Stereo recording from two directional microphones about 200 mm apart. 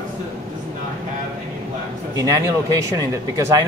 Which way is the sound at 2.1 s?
15° right (ahead or behind).